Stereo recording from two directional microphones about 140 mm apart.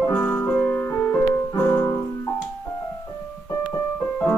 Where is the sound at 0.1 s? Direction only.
15° left (ahead or behind).